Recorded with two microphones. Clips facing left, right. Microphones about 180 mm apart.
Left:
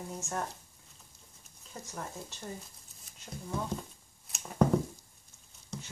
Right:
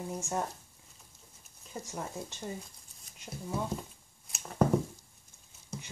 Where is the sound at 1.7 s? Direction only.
15° right (ahead or behind).